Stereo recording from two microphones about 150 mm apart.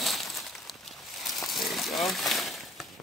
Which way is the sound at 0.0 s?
Centre (ahead or behind).